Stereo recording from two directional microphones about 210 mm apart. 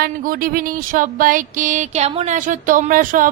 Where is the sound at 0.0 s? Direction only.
45° right (ahead or behind).